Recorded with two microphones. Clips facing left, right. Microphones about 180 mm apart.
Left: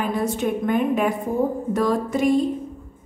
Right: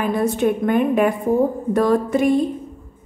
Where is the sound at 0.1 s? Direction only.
60° right (ahead or behind).